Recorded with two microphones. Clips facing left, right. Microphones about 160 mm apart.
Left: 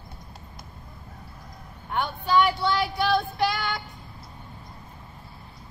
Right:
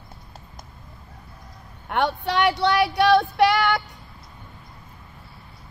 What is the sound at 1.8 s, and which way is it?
A woman's voice, 75° right (ahead or behind).